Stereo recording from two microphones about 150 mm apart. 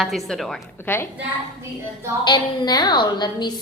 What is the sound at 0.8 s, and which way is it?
Speech, 15° left (ahead or behind).